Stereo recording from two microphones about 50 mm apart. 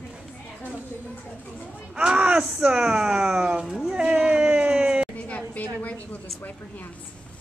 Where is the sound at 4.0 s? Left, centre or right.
Right.